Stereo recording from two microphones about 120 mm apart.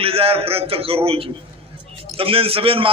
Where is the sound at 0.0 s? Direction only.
50° right (ahead or behind).